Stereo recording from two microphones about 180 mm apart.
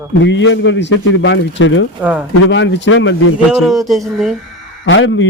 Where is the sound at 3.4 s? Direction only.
Centre (ahead or behind).